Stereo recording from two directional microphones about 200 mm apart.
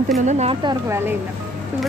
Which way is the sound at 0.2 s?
35° right (ahead or behind).